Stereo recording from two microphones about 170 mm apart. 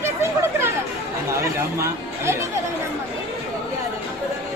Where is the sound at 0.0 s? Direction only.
15° right (ahead or behind).